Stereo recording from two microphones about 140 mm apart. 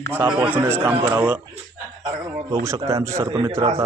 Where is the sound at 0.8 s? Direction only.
35° right (ahead or behind).